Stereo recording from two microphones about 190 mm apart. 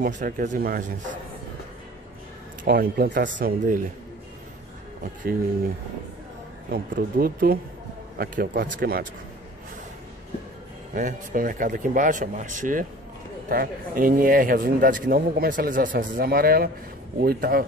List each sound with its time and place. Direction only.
0.0 s speech: 45° right (ahead or behind)
2.6 s speech: 55° right (ahead or behind)
6.7 s speech: 50° right (ahead or behind)
10.9 s speech: 45° right (ahead or behind)